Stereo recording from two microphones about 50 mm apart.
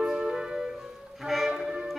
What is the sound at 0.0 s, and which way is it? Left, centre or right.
Music, centre.